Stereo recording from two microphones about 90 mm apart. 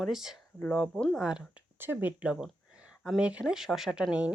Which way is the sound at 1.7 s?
20° right (ahead or behind).